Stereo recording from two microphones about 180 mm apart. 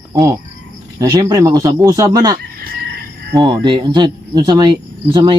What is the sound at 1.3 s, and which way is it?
Speech, 20° right (ahead or behind).